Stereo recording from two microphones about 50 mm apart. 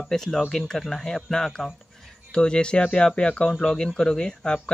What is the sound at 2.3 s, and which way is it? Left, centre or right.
Speech, centre.